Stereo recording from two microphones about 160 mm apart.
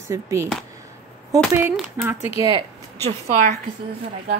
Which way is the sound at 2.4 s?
25° right (ahead or behind).